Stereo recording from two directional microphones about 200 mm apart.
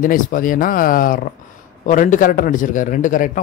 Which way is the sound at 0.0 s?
40° left (ahead or behind).